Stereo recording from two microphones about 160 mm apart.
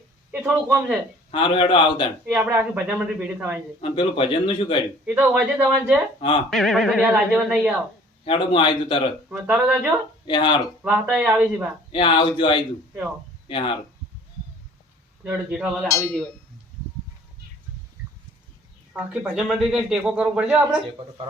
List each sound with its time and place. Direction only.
0.3 s a woman's voice: 5° right (ahead or behind)
1.3 s a man's voice: 35° left (ahead or behind)
2.3 s a woman's voice: 10° right (ahead or behind)
3.8 s a man's voice: 35° left (ahead or behind)
5.0 s a woman's voice: 10° right (ahead or behind)
6.1 s a man's voice: 30° left (ahead or behind)
6.5 s a man's voice: centre (ahead or behind)
8.2 s a man's voice: 35° left (ahead or behind)
9.3 s a woman's voice: 10° right (ahead or behind)
10.2 s speech: 30° left (ahead or behind)
10.8 s a woman's voice: 5° right (ahead or behind)
11.9 s a man's voice: 30° left (ahead or behind)
15.2 s a man's voice: 10° right (ahead or behind)
18.9 s a man's voice: 10° right (ahead or behind)